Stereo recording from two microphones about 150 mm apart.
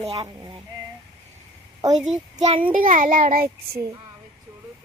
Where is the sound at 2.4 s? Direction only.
45° right (ahead or behind).